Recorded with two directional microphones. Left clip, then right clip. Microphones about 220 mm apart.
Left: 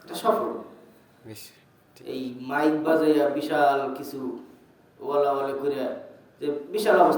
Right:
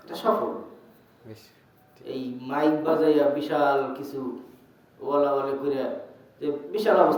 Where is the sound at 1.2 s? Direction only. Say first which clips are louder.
Left 3 dB; 40° left (ahead or behind).